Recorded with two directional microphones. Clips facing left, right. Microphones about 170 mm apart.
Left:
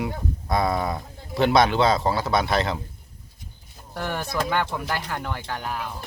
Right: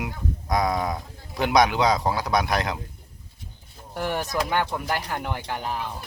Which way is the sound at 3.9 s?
15° right (ahead or behind).